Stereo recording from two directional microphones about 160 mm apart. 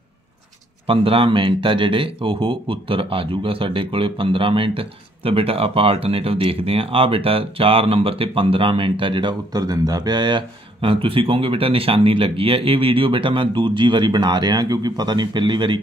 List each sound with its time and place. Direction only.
0.8 s speech: 35° right (ahead or behind)